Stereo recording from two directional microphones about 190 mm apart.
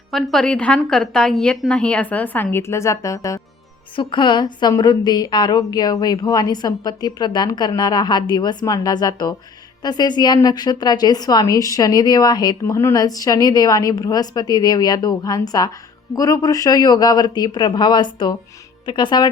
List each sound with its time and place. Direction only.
0.1 s a woman's voice: centre (ahead or behind); by 19.3 s 25° left (ahead or behind)